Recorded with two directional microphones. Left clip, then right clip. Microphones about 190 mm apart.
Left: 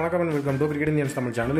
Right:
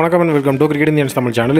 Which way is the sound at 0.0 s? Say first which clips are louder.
Right 11 dB; 55° right (ahead or behind).